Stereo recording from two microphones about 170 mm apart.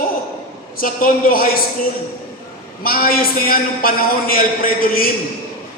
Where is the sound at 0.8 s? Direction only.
55° left (ahead or behind).